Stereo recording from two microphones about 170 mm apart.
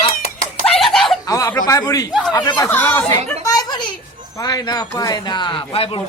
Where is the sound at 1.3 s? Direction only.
20° left (ahead or behind).